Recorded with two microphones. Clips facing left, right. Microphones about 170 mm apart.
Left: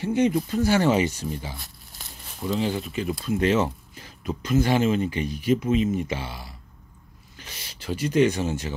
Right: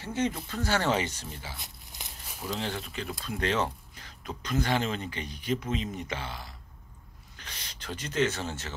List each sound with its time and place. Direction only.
0.0 s speech: 15° left (ahead or behind)
1.6 s crumpling: 20° right (ahead or behind)
2.2 s speech: centre (ahead or behind)